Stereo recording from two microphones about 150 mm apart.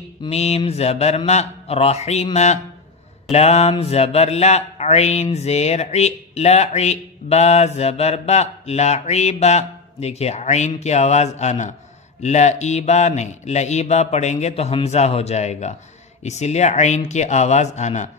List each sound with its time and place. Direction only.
0.3 s speech: 45° left (ahead or behind)